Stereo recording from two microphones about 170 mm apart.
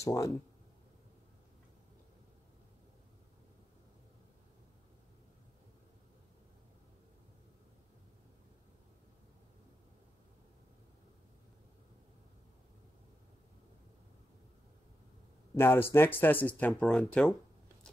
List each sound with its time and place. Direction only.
0.0 s speech: 20° left (ahead or behind)
15.5 s speech: 15° left (ahead or behind)